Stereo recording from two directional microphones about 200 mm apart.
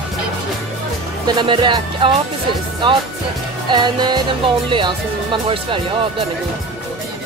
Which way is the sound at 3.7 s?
20° right (ahead or behind).